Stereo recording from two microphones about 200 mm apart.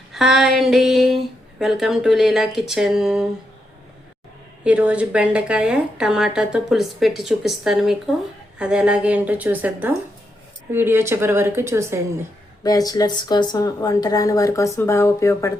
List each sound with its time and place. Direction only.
0.1 s a woman's voice: centre (ahead or behind)
4.6 s a woman's voice: 5° right (ahead or behind)
12.6 s a woman's voice: 20° left (ahead or behind)